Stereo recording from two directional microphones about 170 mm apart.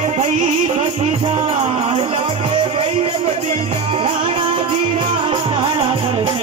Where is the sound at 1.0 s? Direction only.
30° right (ahead or behind).